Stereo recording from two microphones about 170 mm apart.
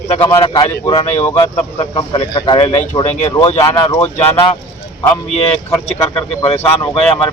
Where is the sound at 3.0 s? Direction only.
45° left (ahead or behind).